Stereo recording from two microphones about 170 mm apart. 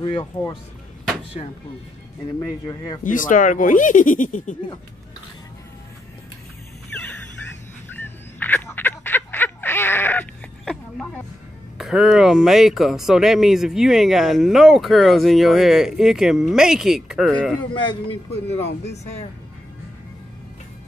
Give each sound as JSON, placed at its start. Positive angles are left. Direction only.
{"t": 0.0, "sound": "speech", "side_deg": 25}
{"t": 2.6, "sound": "speech", "side_deg": 25}
{"t": 3.0, "sound": "speech", "side_deg": 50}
{"t": 6.9, "sound": "music", "side_deg": 10}
{"t": 7.9, "sound": "a sound", "side_deg": 10}
{"t": 11.8, "sound": "speech", "side_deg": 0}
{"t": 17.7, "sound": "a man's voice", "side_deg": 35}